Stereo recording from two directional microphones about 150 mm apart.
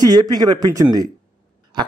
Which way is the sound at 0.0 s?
25° right (ahead or behind).